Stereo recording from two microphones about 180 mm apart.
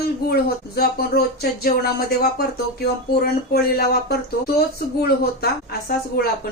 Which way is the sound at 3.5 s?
60° left (ahead or behind).